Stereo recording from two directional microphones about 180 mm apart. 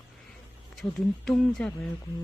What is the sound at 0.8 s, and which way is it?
Speech, 5° left (ahead or behind).